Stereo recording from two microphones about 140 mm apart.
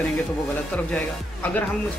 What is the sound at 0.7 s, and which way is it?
Speech, 10° left (ahead or behind).